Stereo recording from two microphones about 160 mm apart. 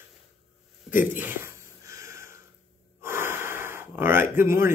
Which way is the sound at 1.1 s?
15° right (ahead or behind).